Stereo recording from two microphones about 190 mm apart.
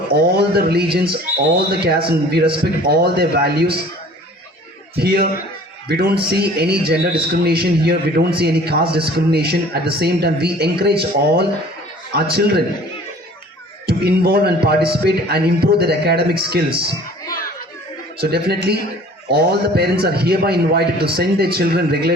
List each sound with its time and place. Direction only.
0.1 s a man's voice: 55° right (ahead or behind)
4.9 s a man's voice: 55° right (ahead or behind)
13.8 s a man's voice: 55° right (ahead or behind)
18.2 s a man's voice: 55° right (ahead or behind)